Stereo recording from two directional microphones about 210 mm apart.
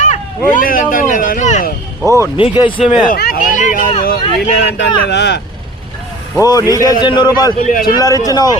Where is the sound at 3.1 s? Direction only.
45° left (ahead or behind).